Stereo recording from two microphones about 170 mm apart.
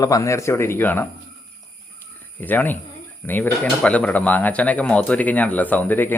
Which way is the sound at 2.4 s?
10° left (ahead or behind).